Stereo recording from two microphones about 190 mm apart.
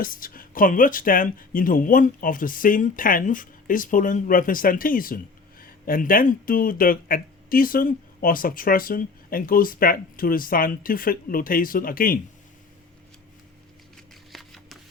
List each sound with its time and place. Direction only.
0.0 s speech: 50° left (ahead or behind)
13.9 s shuffling cards: centre (ahead or behind)